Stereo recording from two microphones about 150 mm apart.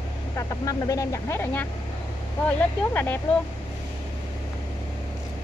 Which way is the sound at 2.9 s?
15° left (ahead or behind).